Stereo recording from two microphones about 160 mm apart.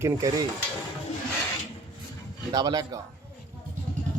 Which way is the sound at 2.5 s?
25° right (ahead or behind).